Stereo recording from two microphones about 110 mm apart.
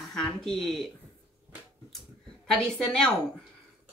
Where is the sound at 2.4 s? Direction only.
5° left (ahead or behind).